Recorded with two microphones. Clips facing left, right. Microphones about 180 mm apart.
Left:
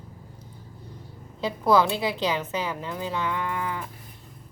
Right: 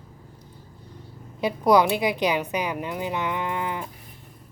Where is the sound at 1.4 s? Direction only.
15° right (ahead or behind).